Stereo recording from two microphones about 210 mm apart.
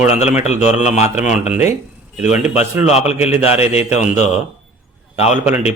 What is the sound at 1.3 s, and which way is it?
Speech, 5° right (ahead or behind).